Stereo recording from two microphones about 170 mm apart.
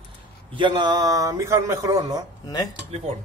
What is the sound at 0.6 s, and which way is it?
A man's voice, 25° right (ahead or behind).